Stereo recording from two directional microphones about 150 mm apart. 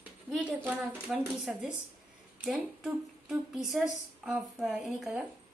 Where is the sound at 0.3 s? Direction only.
5° right (ahead or behind).